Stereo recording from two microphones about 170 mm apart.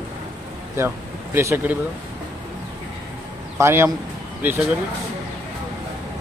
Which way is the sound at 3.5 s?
15° right (ahead or behind).